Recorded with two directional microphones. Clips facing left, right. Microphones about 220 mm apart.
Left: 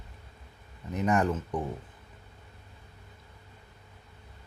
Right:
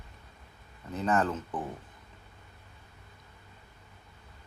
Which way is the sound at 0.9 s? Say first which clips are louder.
Left 2 dB; 15° left (ahead or behind).